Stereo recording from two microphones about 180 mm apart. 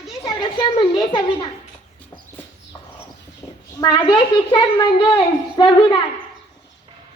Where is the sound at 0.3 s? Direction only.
25° left (ahead or behind).